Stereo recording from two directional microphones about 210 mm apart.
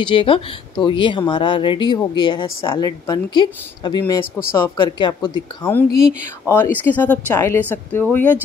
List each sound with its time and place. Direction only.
0.0 s speech: 25° left (ahead or behind)
5.9 s speech: 5° right (ahead or behind)
6.4 s speech: 10° left (ahead or behind)